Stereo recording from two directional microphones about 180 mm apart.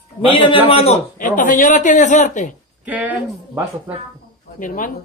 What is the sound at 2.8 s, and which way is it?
Speech, 10° right (ahead or behind).